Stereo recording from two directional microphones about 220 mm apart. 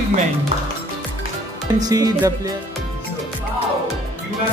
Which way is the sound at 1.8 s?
15° right (ahead or behind).